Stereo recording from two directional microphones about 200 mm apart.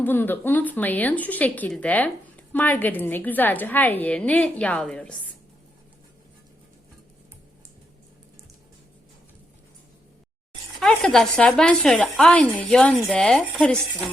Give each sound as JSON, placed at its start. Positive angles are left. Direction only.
{"t": 0.0, "sound": "speech", "side_deg": 10}
{"t": 10.8, "sound": "speech", "side_deg": 0}